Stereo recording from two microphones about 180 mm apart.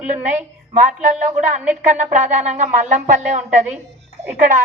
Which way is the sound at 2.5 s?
40° right (ahead or behind).